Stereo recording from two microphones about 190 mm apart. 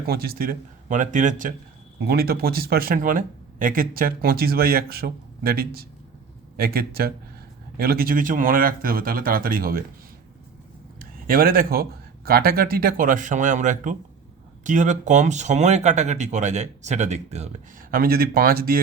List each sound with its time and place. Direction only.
0.1 s speech: 55° right (ahead or behind)
2.0 s speech: 55° right (ahead or behind)
11.0 s speech: 50° right (ahead or behind)